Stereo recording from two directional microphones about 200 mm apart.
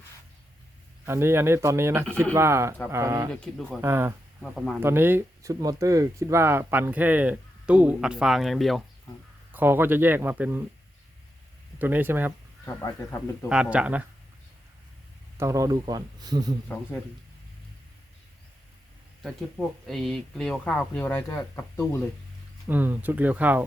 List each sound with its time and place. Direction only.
1.0 s speech: 15° right (ahead or behind)
4.5 s speech: centre (ahead or behind)
4.8 s speech: 10° right (ahead or behind)
11.8 s speech: 10° right (ahead or behind)
12.6 s speech: 15° left (ahead or behind)
13.5 s speech: 5° right (ahead or behind)
15.4 s a man's voice: 15° right (ahead or behind)
19.2 s speech: centre (ahead or behind)
22.6 s speech: 10° right (ahead or behind)